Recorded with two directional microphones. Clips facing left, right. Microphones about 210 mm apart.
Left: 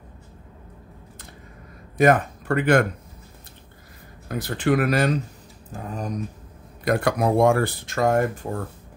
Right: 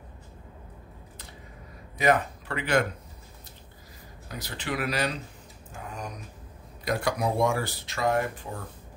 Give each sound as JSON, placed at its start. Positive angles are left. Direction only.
{"t": 2.0, "sound": "speech", "side_deg": 50}
{"t": 4.3, "sound": "speech", "side_deg": 50}
{"t": 5.7, "sound": "speech", "side_deg": 35}
{"t": 6.8, "sound": "speech", "side_deg": 55}